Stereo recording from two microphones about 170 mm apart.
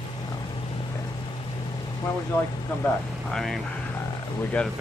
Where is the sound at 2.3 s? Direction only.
10° left (ahead or behind).